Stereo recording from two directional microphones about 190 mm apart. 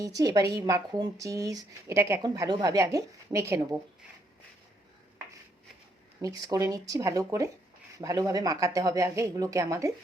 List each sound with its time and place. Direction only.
0.0 s speech: 20° right (ahead or behind)
6.2 s speech: 20° right (ahead or behind)